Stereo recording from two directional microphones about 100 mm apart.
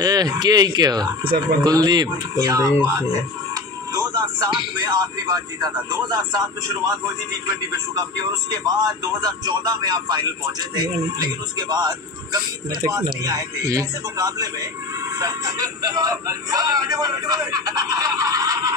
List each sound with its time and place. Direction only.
0.0 s speech: 40° right (ahead or behind)
4.1 s speech: 50° right (ahead or behind)
8.5 s speech: 40° right (ahead or behind)